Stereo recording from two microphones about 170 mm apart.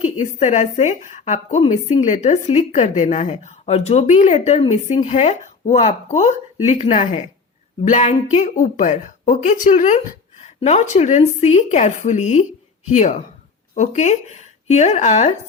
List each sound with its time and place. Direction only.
0.0 s a woman's voice: 40° left (ahead or behind)